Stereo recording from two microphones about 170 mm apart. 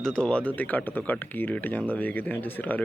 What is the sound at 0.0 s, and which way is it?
Speech, 5° left (ahead or behind).